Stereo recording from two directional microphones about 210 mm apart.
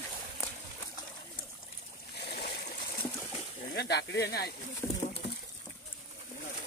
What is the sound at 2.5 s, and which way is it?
Water, 45° left (ahead or behind).